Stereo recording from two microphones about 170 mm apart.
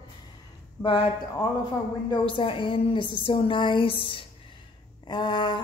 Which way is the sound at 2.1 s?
30° left (ahead or behind).